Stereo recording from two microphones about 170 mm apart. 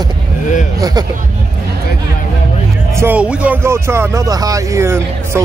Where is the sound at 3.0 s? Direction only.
10° right (ahead or behind).